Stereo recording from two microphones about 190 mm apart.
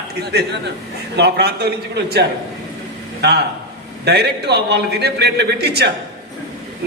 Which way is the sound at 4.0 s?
60° right (ahead or behind).